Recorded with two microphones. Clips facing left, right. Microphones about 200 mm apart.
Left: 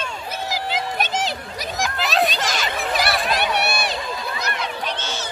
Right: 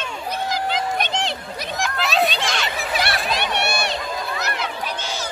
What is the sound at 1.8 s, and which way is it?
Chatter, centre (ahead or behind).